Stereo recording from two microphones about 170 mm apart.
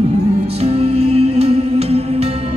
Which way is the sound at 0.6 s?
35° right (ahead or behind).